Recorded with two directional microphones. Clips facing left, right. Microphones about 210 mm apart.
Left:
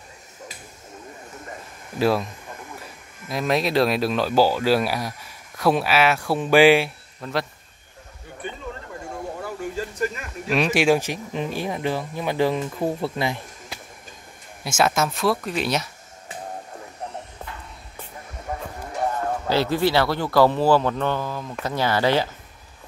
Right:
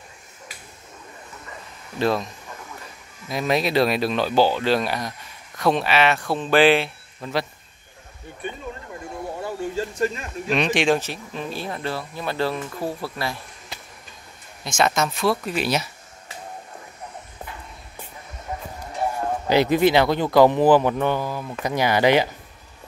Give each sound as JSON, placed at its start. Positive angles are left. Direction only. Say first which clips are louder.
{"t": 2.0, "sound": "speech", "louder": "left 1 dB", "side_deg": 5}
{"t": 3.3, "sound": "speech", "louder": "even", "side_deg": 0}
{"t": 7.2, "sound": "speech", "louder": "right 1 dB", "side_deg": 0}
{"t": 9.4, "sound": "a sound", "louder": "right 4 dB", "side_deg": -25}
{"t": 10.5, "sound": "speech", "louder": "left 1 dB", "side_deg": 5}
{"t": 14.6, "sound": "speech", "louder": "even", "side_deg": 5}
{"t": 19.4, "sound": "speech", "louder": "right 4 dB", "side_deg": -15}